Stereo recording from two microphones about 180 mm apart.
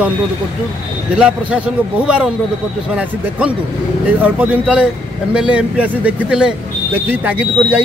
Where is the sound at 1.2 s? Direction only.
5° right (ahead or behind).